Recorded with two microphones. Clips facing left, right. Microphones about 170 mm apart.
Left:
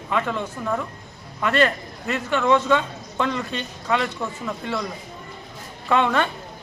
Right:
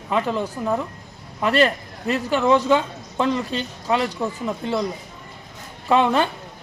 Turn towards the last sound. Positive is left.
turn(degrees=-30)  # may be behind; listen again after turning